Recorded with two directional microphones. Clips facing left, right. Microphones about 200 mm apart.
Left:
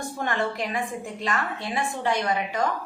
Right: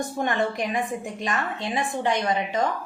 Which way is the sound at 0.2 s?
20° right (ahead or behind).